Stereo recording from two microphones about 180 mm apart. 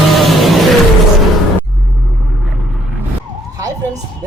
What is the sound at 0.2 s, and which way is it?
Vehicle, centre (ahead or behind).